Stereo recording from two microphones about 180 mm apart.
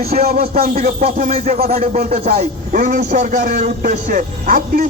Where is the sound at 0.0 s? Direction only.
60° right (ahead or behind).